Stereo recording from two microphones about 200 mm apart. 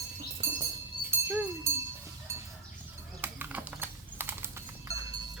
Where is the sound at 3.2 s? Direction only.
10° right (ahead or behind).